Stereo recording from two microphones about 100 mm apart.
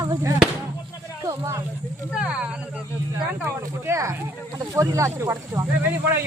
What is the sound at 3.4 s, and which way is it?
Speech, 30° right (ahead or behind).